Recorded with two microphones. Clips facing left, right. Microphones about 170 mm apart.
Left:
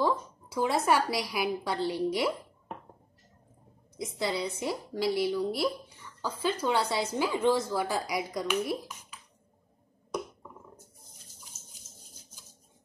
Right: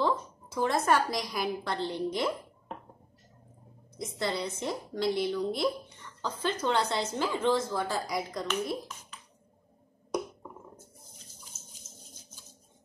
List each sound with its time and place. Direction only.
0.0 s a woman's voice: 10° left (ahead or behind)
4.0 s a woman's voice: 5° left (ahead or behind)